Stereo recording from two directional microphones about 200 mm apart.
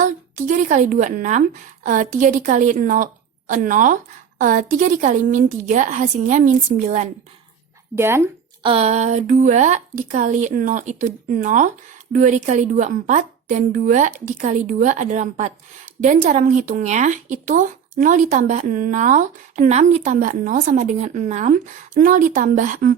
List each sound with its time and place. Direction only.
0.0 s speech: 40° right (ahead or behind)
7.9 s speech: 10° right (ahead or behind)
8.6 s speech: 30° right (ahead or behind)